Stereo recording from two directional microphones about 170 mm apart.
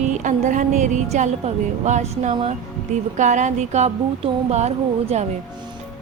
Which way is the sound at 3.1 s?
45° right (ahead or behind).